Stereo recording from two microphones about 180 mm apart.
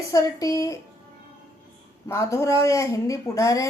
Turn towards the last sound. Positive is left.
turn(degrees=15)  # may be behind; listen again after turning